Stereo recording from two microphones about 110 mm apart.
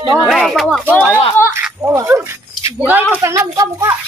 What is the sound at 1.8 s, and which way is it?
Speech, 30° right (ahead or behind).